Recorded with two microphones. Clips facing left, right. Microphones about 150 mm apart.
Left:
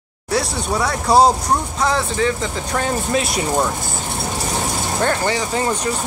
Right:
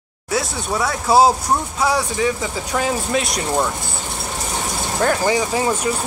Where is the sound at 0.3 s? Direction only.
Centre (ahead or behind).